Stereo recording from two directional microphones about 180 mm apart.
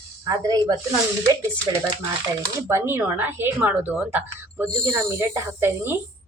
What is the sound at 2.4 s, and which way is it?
A woman's voice, 15° right (ahead or behind).